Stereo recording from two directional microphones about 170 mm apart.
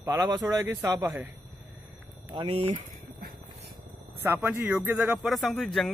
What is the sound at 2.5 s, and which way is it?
Speech, 35° right (ahead or behind).